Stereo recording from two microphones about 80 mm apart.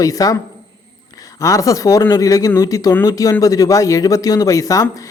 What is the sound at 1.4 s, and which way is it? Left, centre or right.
A man's voice, left.